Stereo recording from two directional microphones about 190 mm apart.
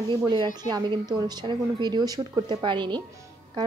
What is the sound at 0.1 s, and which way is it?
A woman's voice, 25° right (ahead or behind).